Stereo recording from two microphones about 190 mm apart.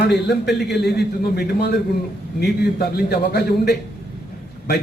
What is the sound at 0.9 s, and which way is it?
A man's voice, 55° left (ahead or behind).